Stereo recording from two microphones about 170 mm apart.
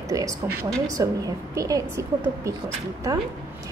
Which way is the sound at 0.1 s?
20° right (ahead or behind).